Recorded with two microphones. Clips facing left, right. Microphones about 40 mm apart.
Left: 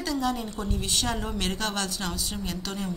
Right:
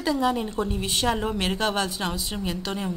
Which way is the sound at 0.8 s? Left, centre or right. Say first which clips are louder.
Right 3 dB; centre.